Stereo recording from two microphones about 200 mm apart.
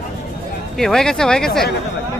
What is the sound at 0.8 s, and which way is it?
Speech, 5° left (ahead or behind).